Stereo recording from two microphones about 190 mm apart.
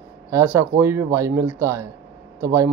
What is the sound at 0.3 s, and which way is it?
Speech, 15° right (ahead or behind).